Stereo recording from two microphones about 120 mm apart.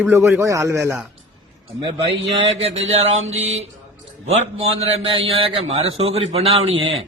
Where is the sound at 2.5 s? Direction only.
60° right (ahead or behind).